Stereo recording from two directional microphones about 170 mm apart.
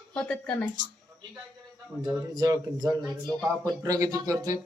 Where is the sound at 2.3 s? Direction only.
25° right (ahead or behind).